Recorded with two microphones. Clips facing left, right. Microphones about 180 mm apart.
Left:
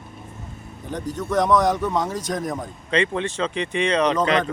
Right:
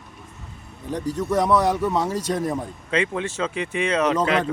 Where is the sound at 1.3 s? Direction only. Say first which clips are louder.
Left 1 dB; 5° right (ahead or behind).